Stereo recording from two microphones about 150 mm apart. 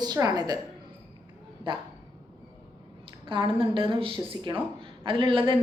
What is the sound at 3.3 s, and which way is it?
A woman's voice, 35° right (ahead or behind).